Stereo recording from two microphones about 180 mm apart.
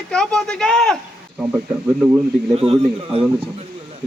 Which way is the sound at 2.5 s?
35° right (ahead or behind).